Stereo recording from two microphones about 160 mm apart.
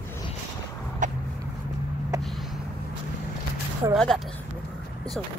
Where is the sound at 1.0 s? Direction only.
50° right (ahead or behind).